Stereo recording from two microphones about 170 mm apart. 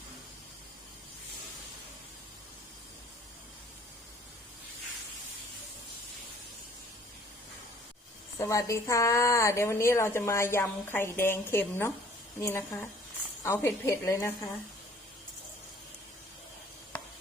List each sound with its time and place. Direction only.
8.4 s a woman's voice: 20° left (ahead or behind)